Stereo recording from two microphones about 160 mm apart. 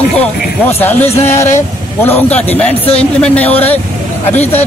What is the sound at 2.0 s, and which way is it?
Speech, 10° left (ahead or behind).